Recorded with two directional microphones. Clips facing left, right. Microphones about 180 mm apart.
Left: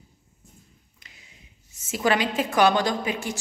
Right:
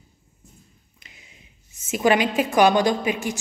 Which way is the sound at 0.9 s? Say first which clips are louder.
Right 5 dB; 20° right (ahead or behind).